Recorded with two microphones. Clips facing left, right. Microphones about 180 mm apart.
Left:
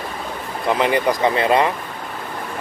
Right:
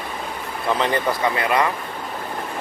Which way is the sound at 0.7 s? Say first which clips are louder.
Left 4 dB; 15° left (ahead or behind).